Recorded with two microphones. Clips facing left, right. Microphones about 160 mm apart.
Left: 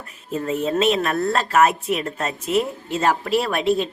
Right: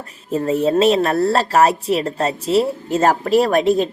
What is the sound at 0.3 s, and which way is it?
A woman's voice, 35° right (ahead or behind).